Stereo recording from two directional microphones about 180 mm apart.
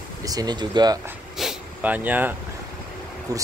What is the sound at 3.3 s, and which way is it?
Speech, 20° right (ahead or behind).